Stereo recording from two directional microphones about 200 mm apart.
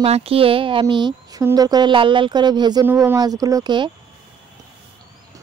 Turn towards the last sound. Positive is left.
turn(degrees=-20)  # may be behind; listen again after turning